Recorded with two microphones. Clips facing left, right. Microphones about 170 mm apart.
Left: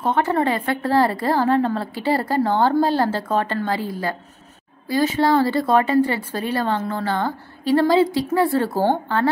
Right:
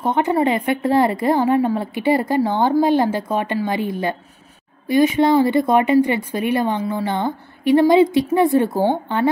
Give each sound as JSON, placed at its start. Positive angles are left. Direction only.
{"t": 0.0, "sound": "a woman's voice", "side_deg": -15}